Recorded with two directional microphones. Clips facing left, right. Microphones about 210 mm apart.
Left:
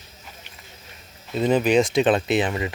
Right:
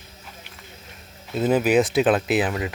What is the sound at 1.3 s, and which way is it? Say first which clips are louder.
Speech: even; 5° right (ahead or behind).